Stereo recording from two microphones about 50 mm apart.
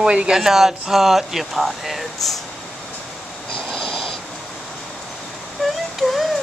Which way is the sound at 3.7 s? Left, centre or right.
Centre.